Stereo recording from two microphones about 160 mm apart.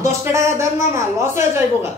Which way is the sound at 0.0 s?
20° right (ahead or behind).